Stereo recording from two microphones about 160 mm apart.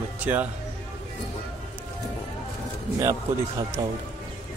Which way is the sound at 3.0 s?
20° right (ahead or behind).